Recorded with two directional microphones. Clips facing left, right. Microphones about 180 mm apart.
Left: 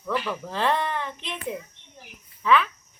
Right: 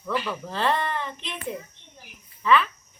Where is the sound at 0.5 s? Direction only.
10° left (ahead or behind).